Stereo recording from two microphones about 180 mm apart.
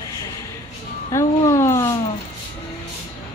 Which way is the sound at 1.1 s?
15° left (ahead or behind).